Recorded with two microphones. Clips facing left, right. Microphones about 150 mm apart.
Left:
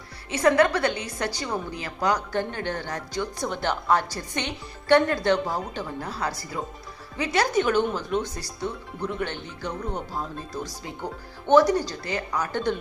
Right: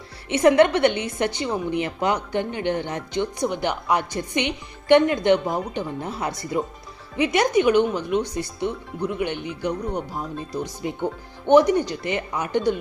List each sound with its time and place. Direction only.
0.3 s a woman's voice: 25° right (ahead or behind)